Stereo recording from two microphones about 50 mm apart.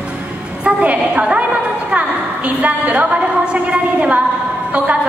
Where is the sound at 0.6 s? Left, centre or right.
Right.